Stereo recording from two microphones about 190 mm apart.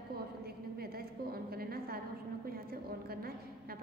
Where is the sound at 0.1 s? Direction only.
55° right (ahead or behind).